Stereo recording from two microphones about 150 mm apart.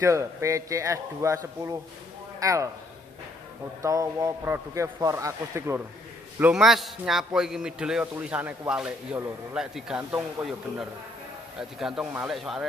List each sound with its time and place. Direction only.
0.0 s a man's voice: 20° right (ahead or behind)
3.8 s a man's voice: 20° right (ahead or behind)
6.4 s a man's voice: centre (ahead or behind)